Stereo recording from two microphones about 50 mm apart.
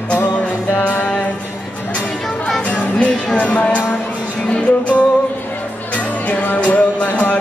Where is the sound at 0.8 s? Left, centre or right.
Left.